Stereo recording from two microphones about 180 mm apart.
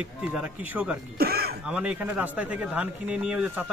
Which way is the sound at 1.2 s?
60° right (ahead or behind).